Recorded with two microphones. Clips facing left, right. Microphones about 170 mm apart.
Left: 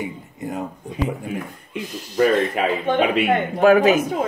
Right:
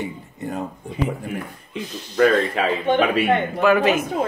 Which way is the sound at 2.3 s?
15° left (ahead or behind).